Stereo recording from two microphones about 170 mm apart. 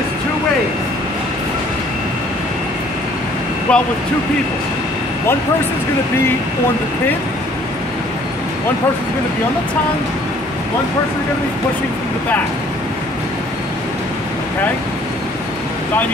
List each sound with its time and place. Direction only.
3.7 s speech: 5° left (ahead or behind)